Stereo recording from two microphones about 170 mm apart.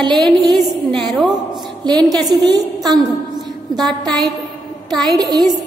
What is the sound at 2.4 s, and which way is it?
A woman's voice, 25° right (ahead or behind).